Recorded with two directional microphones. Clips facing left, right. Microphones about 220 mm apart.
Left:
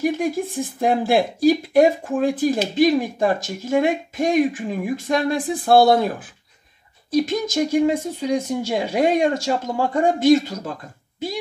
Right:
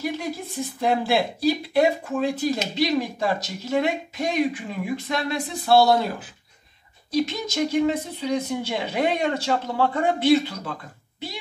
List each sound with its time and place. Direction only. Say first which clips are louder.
0.0 s speech: left 7 dB; 50° left (ahead or behind)